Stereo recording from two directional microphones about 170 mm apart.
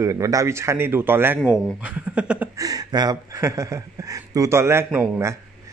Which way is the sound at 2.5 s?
20° right (ahead or behind).